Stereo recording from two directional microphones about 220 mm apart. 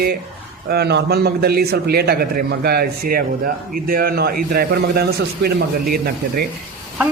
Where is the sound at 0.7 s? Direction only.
50° right (ahead or behind).